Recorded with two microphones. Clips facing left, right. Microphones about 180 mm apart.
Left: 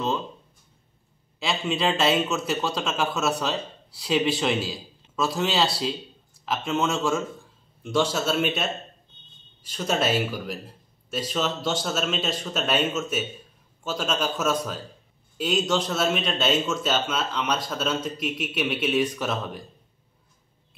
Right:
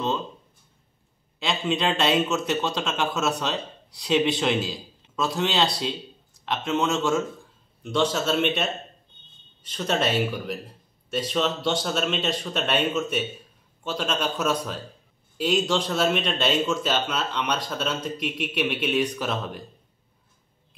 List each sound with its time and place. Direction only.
1.4 s a man's voice: 5° left (ahead or behind)
9.7 s a man's voice: 5° left (ahead or behind)